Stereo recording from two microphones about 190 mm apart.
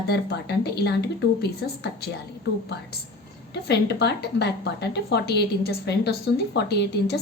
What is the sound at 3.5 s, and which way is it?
Speech, 60° left (ahead or behind).